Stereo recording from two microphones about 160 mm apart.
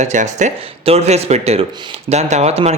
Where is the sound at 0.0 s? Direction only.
50° right (ahead or behind).